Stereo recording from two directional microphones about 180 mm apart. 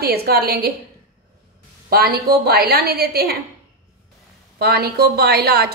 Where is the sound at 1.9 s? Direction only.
60° right (ahead or behind).